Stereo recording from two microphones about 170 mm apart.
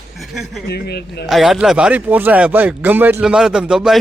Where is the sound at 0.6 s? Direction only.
75° left (ahead or behind).